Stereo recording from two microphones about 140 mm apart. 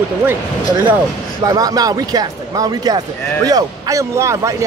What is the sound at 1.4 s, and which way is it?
Speech, 25° right (ahead or behind).